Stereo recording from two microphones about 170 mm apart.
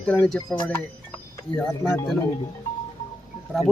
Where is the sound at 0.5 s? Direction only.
25° left (ahead or behind).